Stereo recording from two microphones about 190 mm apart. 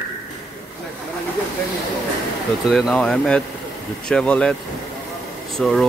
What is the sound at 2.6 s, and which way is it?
Speech, centre (ahead or behind).